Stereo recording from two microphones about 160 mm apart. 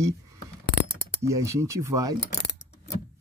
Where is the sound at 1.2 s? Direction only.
20° right (ahead or behind).